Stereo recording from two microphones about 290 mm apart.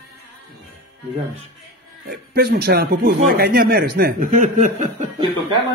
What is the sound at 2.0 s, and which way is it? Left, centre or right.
Speech, right.